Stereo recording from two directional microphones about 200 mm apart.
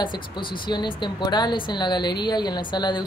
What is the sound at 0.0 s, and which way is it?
A woman's voice, 25° left (ahead or behind).